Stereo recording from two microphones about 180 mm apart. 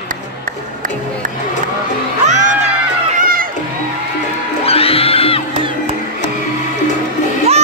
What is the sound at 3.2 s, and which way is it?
Crowd, 50° right (ahead or behind).